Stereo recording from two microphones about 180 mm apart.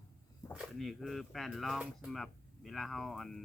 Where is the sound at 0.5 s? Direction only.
Centre (ahead or behind).